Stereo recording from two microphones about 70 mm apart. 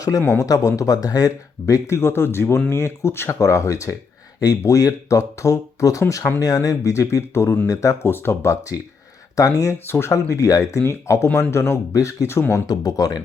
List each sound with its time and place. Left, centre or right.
0.3 s speech: left
6.4 s speech: left
7.7 s speech: left
8.0 s speech: left
9.3 s speech: left
9.7 s speech: left
10.1 s speech: left
12.6 s speech: left